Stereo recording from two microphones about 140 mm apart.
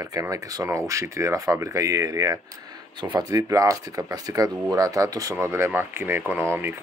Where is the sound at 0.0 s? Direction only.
20° right (ahead or behind).